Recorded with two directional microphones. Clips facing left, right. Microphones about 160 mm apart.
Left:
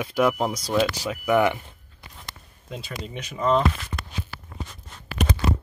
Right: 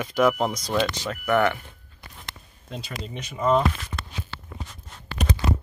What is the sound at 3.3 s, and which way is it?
Speech, 5° right (ahead or behind).